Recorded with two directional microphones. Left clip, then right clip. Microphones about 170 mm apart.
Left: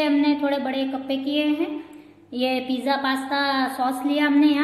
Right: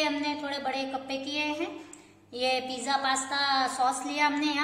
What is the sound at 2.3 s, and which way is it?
A woman's voice, 35° left (ahead or behind).